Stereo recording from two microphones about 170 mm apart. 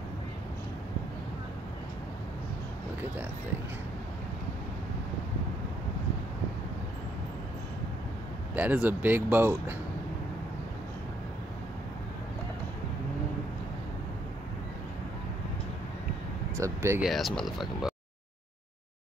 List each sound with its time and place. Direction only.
8.5 s speech: 10° right (ahead or behind)
16.5 s speech: 15° right (ahead or behind)
17.0 s speech: centre (ahead or behind)